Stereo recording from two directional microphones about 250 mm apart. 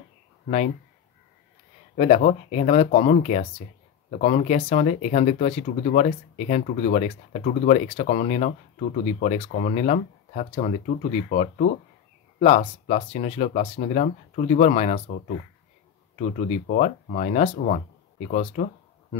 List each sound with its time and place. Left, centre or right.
2.0 s speech: left
16.2 s speech: left